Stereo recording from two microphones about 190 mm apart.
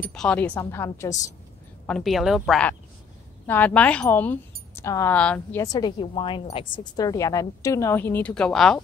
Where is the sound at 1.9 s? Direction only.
Centre (ahead or behind).